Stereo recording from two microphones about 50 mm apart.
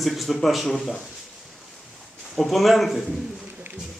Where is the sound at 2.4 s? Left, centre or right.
Centre.